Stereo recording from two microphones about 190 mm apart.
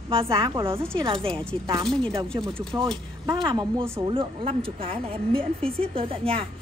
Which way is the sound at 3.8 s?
15° right (ahead or behind).